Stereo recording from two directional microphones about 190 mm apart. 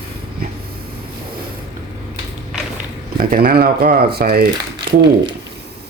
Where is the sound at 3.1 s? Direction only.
50° right (ahead or behind).